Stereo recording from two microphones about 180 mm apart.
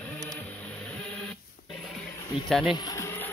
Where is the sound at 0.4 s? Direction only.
5° left (ahead or behind).